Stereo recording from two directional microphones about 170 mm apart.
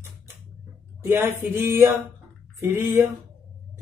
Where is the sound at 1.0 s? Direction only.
15° right (ahead or behind).